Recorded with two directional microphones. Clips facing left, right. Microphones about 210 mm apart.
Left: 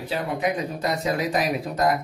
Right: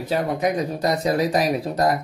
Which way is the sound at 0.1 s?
40° right (ahead or behind).